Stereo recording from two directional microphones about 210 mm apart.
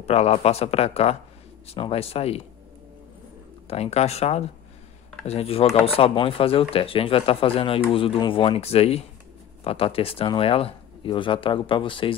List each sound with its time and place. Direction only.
0.0 s speech: 30° left (ahead or behind)
3.6 s speech: 30° left (ahead or behind)